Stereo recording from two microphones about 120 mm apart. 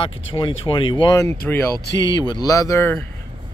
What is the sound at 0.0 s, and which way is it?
Speech, 45° left (ahead or behind).